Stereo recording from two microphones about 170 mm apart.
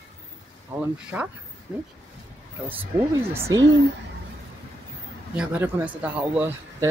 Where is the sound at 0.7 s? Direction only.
10° right (ahead or behind).